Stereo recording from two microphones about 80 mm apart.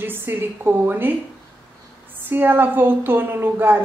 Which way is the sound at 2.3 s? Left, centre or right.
Right.